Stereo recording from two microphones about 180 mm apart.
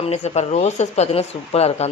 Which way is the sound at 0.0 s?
35° left (ahead or behind).